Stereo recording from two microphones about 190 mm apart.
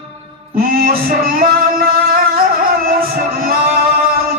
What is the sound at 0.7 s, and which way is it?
Music, 50° right (ahead or behind).